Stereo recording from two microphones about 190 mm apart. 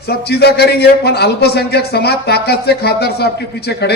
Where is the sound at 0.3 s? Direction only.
60° left (ahead or behind).